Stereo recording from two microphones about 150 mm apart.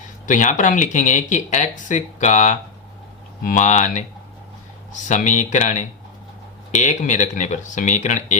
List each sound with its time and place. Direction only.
0.3 s speech: 55° left (ahead or behind)
5.0 s speech: 55° left (ahead or behind)